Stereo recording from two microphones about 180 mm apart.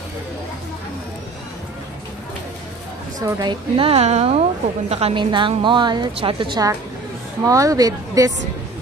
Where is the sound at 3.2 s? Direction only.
20° right (ahead or behind).